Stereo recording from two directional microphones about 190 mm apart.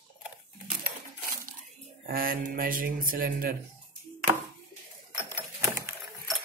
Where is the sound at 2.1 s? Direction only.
50° right (ahead or behind).